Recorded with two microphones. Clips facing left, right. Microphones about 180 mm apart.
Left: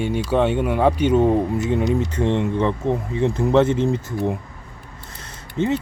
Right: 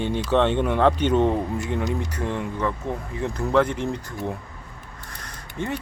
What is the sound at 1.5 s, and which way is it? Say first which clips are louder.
Speech: left 6 dB; 20° left (ahead or behind).